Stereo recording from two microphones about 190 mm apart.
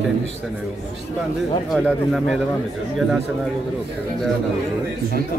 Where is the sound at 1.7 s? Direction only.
Centre (ahead or behind).